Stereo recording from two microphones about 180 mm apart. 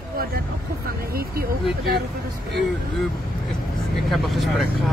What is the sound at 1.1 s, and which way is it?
Speech, 55° right (ahead or behind).